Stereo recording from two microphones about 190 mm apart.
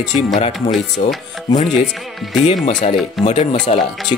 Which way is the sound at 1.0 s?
35° left (ahead or behind).